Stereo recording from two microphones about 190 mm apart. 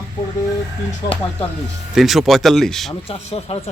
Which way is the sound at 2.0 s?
Centre (ahead or behind).